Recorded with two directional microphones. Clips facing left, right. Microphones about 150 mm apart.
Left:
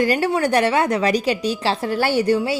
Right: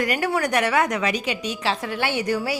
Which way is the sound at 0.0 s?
30° left (ahead or behind).